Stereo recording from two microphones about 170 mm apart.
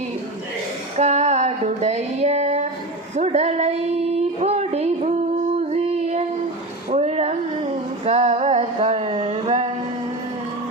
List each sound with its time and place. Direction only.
0.9 s a sound: 40° right (ahead or behind)
3.2 s child singing: 40° right (ahead or behind)
6.9 s female singing: 40° right (ahead or behind)